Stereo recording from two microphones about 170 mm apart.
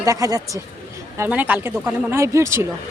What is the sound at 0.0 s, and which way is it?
Speech, 20° right (ahead or behind).